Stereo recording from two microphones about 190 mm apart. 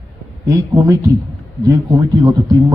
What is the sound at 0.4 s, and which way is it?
A man's voice, 15° right (ahead or behind).